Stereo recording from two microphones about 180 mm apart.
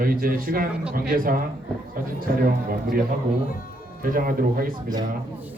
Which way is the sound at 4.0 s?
55° right (ahead or behind).